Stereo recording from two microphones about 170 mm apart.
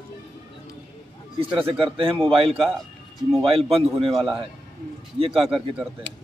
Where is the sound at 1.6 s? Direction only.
30° right (ahead or behind).